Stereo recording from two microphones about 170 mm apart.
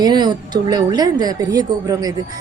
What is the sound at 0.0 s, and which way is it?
Speech, 25° right (ahead or behind).